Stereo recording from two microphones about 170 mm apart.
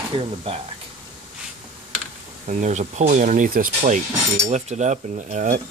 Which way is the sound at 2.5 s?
45° right (ahead or behind).